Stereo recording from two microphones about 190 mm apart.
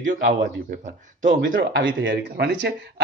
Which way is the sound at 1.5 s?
90° right.